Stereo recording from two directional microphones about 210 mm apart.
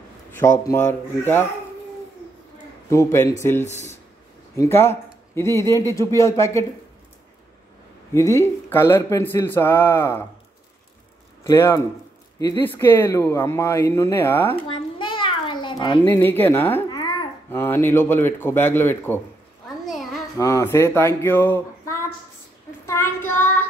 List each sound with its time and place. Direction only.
0.3 s a man's voice: 10° left (ahead or behind)
2.9 s a man's voice: 15° left (ahead or behind)
8.1 s a man's voice: 15° left (ahead or behind)
11.4 s a man's voice: 10° left (ahead or behind)
15.0 s a sound: 25° left (ahead or behind)
16.0 s a man's voice: 10° left (ahead or behind)
16.9 s babbling: 20° left (ahead or behind)
17.5 s a man's voice: 10° left (ahead or behind)
19.9 s a sound: centre (ahead or behind)
20.3 s a man's voice: 15° left (ahead or behind)
22.8 s child singing: 10° left (ahead or behind)